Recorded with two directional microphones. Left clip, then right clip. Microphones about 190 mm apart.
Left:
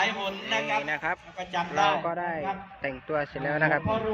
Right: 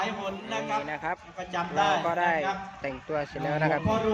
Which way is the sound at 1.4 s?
70° right (ahead or behind).